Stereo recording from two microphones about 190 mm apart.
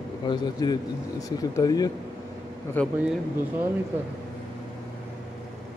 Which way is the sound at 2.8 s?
10° left (ahead or behind).